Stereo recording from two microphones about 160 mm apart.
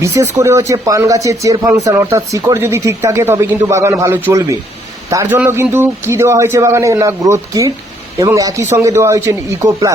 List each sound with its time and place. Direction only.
0.0 s speech: 20° right (ahead or behind)